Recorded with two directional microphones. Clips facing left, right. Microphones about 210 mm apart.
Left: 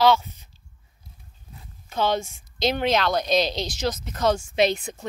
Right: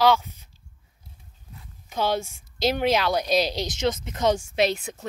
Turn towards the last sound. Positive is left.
turn(degrees=-5)  # may be behind; listen again after turning